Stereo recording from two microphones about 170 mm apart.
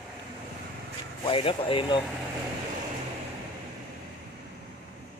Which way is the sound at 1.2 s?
30° left (ahead or behind).